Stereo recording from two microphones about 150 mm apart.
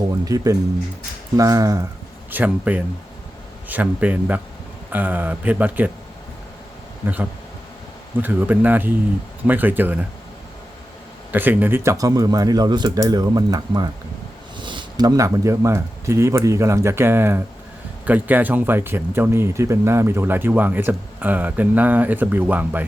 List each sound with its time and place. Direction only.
0.3 s speech: 25° right (ahead or behind)
2.3 s speech: 10° right (ahead or behind)
7.0 s speech: 10° right (ahead or behind)
11.3 s speech: 10° right (ahead or behind)